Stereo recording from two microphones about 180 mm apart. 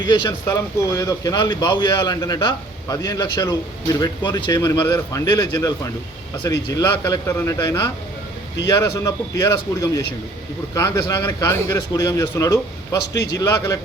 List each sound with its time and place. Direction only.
0.0 s speech: 25° left (ahead or behind)